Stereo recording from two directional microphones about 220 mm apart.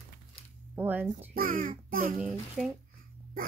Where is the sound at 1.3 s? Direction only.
40° right (ahead or behind).